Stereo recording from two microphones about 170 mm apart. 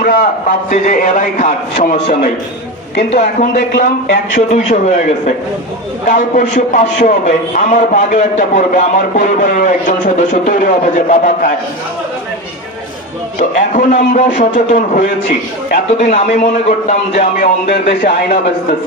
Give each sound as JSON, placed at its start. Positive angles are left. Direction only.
{"t": 0.0, "sound": "a man's voice", "side_deg": 50}
{"t": 13.6, "sound": "a man's voice", "side_deg": 50}
{"t": 18.0, "sound": "speech", "side_deg": 55}